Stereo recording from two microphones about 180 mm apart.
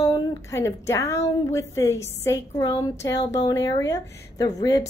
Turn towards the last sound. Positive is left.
turn(degrees=20)  # may be behind; listen again after turning